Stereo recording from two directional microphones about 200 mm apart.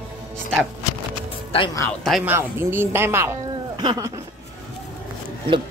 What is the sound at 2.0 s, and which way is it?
Speech, centre (ahead or behind).